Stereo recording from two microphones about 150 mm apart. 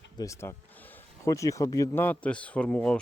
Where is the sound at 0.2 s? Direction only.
20° left (ahead or behind).